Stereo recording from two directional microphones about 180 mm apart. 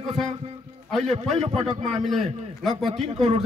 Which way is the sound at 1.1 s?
40° right (ahead or behind).